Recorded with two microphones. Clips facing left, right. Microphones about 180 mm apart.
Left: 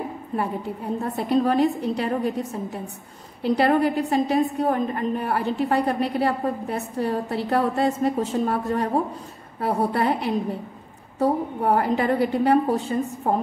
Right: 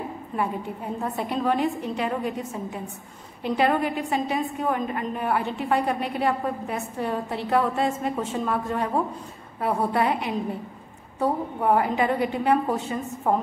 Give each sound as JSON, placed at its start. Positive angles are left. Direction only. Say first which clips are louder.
{"t": 1.0, "sound": "a woman's voice", "louder": "left 4 dB", "side_deg": 40}
{"t": 3.4, "sound": "a woman's voice", "louder": "left 3 dB", "side_deg": 40}